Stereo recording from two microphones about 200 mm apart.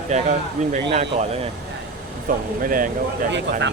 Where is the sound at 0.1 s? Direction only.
35° right (ahead or behind).